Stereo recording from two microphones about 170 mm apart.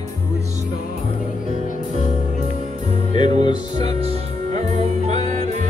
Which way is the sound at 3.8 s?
35° right (ahead or behind).